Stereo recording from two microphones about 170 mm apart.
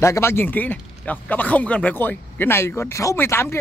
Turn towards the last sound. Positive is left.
turn(degrees=15)  # may be behind; listen again after turning